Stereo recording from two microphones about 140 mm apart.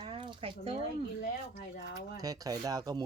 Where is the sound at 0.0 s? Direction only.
35° right (ahead or behind).